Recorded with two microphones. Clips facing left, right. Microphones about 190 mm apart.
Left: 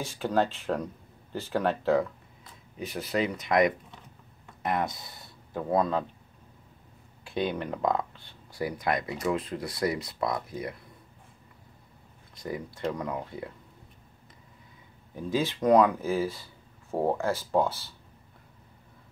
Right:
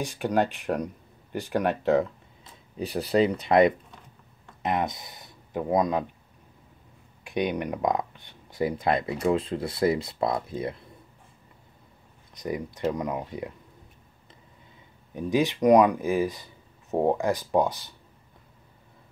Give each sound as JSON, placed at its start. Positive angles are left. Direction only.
{"t": 0.0, "sound": "speech", "side_deg": -15}
{"t": 2.8, "sound": "speech", "side_deg": -35}
{"t": 4.6, "sound": "speech", "side_deg": -20}
{"t": 7.2, "sound": "speech", "side_deg": -15}
{"t": 12.4, "sound": "speech", "side_deg": -20}
{"t": 15.1, "sound": "speech", "side_deg": -15}